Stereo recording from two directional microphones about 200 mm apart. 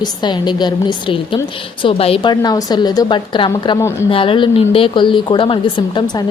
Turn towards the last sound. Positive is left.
turn(degrees=25)  # may be behind; listen again after turning